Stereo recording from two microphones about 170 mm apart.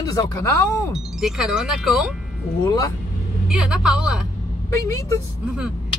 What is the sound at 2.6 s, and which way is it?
Speech, 20° left (ahead or behind).